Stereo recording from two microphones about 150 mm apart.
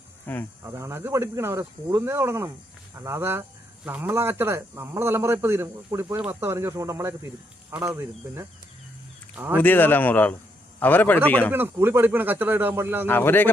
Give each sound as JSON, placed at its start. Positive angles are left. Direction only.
{"t": 0.3, "sound": "speech", "side_deg": 10}
{"t": 0.6, "sound": "a man's voice", "side_deg": -20}
{"t": 9.6, "sound": "speech", "side_deg": 10}
{"t": 11.5, "sound": "a man's voice", "side_deg": -15}
{"t": 13.1, "sound": "speech", "side_deg": 15}